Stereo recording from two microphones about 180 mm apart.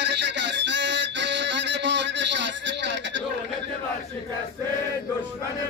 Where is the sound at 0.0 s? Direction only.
70° right (ahead or behind).